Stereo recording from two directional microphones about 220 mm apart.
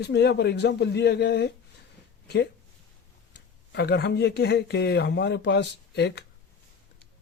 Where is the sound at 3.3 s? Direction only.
50° left (ahead or behind).